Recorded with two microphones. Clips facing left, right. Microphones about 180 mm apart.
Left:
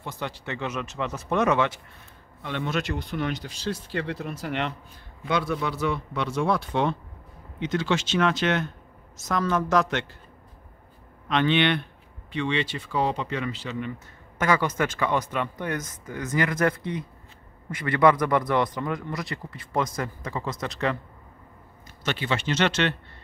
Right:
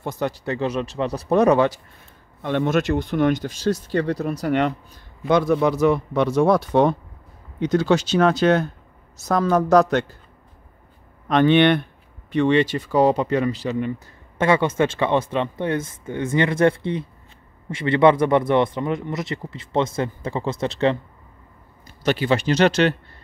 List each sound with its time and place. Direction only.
0.0 s speech: 45° right (ahead or behind)
2.4 s speech: 50° right (ahead or behind)
11.2 s speech: 45° right (ahead or behind)